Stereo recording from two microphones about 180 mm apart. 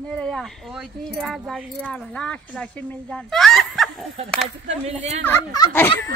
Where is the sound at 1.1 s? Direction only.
Centre (ahead or behind).